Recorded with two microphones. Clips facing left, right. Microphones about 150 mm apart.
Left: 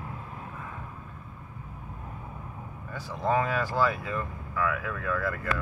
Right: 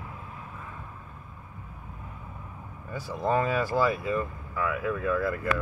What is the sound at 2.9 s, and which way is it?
Speech, 5° right (ahead or behind).